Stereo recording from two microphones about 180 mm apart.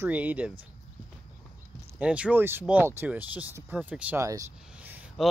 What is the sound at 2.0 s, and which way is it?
Speech, 5° right (ahead or behind).